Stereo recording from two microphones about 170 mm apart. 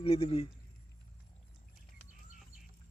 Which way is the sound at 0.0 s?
35° left (ahead or behind).